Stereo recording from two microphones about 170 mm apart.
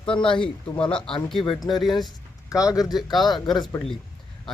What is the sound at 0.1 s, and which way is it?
Speech, 30° left (ahead or behind).